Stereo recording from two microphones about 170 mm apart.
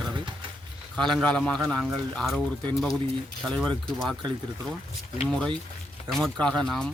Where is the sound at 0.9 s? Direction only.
5° left (ahead or behind).